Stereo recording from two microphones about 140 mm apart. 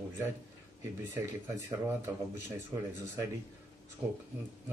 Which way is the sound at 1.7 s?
20° right (ahead or behind).